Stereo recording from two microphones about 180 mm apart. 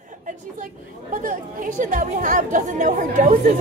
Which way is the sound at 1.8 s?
45° right (ahead or behind).